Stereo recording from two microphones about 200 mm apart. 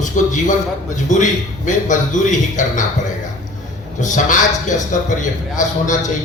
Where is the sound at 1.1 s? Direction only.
40° left (ahead or behind).